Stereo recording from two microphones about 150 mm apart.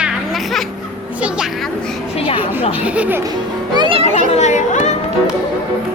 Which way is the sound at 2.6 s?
10° right (ahead or behind).